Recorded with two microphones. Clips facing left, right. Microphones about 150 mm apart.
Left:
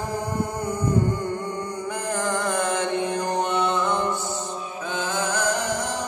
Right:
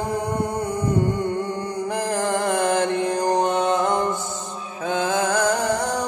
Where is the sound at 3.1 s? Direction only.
40° right (ahead or behind).